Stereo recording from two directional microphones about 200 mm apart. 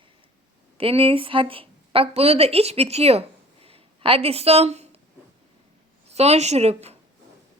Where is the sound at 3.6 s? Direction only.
30° right (ahead or behind).